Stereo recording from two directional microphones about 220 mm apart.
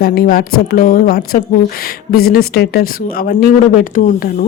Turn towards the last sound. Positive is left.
turn(degrees=40)  # may be behind; listen again after turning